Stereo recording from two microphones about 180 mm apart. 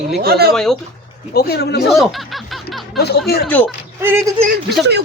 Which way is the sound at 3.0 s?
65° left (ahead or behind).